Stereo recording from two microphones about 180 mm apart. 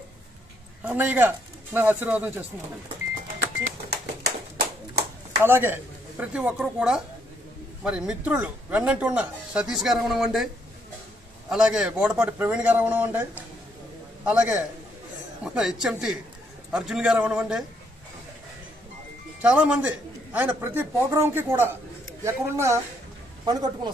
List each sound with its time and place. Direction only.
0.8 s a man's voice: 10° right (ahead or behind)
5.4 s a man's voice: 10° right (ahead or behind)
19.4 s a man's voice: 5° right (ahead or behind); by 23.9 s 20° right (ahead or behind)